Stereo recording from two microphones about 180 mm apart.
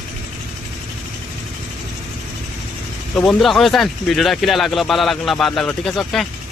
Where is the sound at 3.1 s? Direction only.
5° left (ahead or behind).